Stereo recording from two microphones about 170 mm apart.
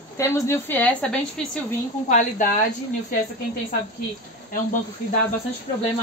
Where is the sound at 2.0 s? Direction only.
50° left (ahead or behind).